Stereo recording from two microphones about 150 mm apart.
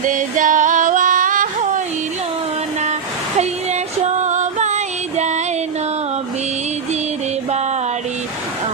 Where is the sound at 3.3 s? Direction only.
50° right (ahead or behind).